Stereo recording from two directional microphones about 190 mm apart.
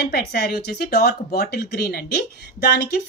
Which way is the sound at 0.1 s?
60° left (ahead or behind).